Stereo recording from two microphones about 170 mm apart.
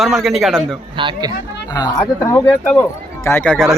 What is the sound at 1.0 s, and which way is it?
Speech, 30° right (ahead or behind).